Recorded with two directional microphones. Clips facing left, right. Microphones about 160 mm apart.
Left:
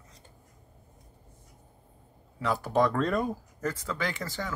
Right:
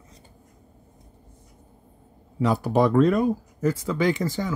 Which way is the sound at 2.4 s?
15° right (ahead or behind).